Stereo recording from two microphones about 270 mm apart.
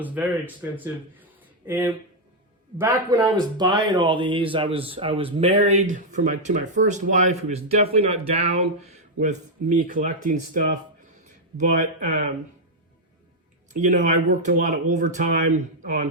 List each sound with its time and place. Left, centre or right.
0.0 s speech: centre
1.2 s a sound: centre
2.7 s speech: centre; by 8.0 s right
9.1 s speech: right
13.7 s speech: right